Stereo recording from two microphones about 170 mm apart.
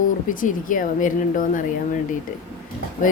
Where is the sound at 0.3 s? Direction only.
50° left (ahead or behind).